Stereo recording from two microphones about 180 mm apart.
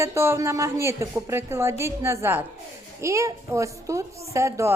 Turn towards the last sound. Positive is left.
turn(degrees=-15)  # may be behind; listen again after turning